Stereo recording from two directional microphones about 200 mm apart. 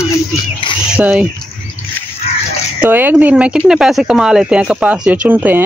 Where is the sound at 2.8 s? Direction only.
10° right (ahead or behind).